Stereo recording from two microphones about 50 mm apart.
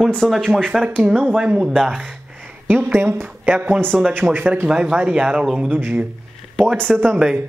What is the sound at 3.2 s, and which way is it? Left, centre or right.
Speech, right.